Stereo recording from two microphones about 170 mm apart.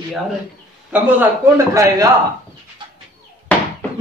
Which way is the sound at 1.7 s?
20° right (ahead or behind).